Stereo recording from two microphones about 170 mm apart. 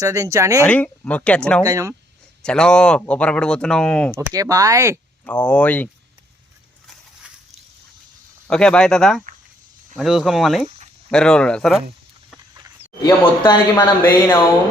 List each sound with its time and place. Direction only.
0.0 s speech: 20° right (ahead or behind)
0.6 s speech: 10° left (ahead or behind)
1.6 s speech: 20° right (ahead or behind)
2.4 s speech: 5° left (ahead or behind)
4.1 s speech: 20° right (ahead or behind)
5.2 s speech: 10° left (ahead or behind)
8.4 s speech: 5° left (ahead or behind)
12.5 s a sound: 20° right (ahead or behind)
13.0 s speech: 25° left (ahead or behind)